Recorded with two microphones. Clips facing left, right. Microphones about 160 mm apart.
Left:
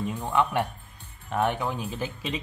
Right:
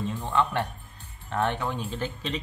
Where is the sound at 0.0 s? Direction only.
10° left (ahead or behind).